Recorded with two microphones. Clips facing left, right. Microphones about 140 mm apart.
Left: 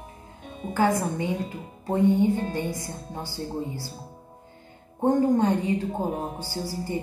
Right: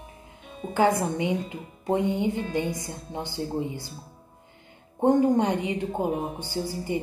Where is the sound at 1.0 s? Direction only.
20° right (ahead or behind).